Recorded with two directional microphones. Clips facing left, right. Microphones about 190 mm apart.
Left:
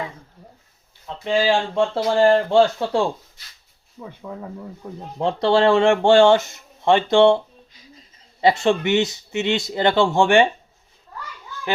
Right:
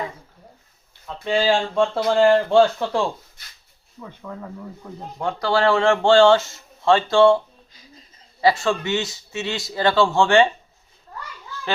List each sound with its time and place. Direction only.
1.0 s speech: 20° left (ahead or behind)
2.0 s speech: 35° left (ahead or behind)
4.0 s speech: 15° left (ahead or behind)
5.1 s speech: 25° left (ahead or behind)